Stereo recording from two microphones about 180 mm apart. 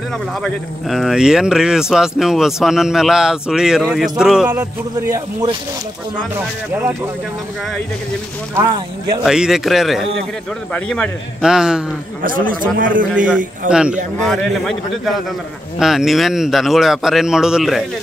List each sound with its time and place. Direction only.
0.3 s speech: centre (ahead or behind)
9.2 s speech: 5° right (ahead or behind)
12.2 s a man's voice: 50° right (ahead or behind)
13.7 s speech: 5° right (ahead or behind)
15.8 s speech: centre (ahead or behind)